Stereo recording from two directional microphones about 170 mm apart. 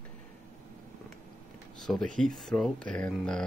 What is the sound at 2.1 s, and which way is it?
Speech, 5° left (ahead or behind).